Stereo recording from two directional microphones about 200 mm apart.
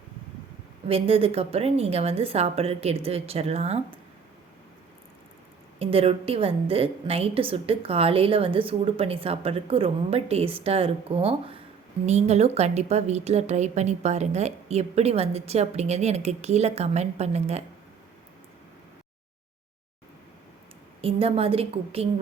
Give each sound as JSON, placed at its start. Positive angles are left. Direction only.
{"t": 0.9, "sound": "a woman's voice", "side_deg": -30}
{"t": 5.8, "sound": "a woman's voice", "side_deg": -30}
{"t": 21.0, "sound": "a woman's voice", "side_deg": -30}